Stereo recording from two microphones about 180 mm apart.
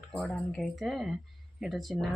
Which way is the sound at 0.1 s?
5° left (ahead or behind).